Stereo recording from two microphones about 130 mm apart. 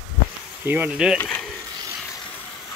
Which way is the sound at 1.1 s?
10° left (ahead or behind).